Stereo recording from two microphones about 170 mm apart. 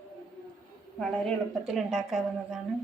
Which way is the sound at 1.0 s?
Centre (ahead or behind).